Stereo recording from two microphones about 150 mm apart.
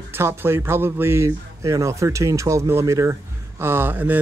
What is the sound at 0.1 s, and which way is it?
Speech, 15° right (ahead or behind).